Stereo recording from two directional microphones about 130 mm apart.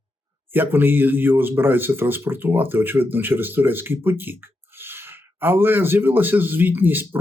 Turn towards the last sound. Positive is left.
turn(degrees=-15)  # may be behind; listen again after turning